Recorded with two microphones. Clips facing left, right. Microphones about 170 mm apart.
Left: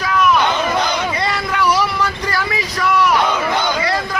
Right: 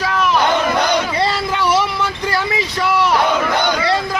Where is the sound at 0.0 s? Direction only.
30° right (ahead or behind).